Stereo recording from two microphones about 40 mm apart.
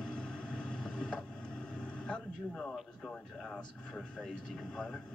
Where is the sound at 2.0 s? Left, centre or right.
Left.